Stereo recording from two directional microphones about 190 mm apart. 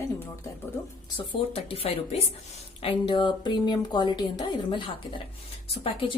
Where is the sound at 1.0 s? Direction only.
25° left (ahead or behind).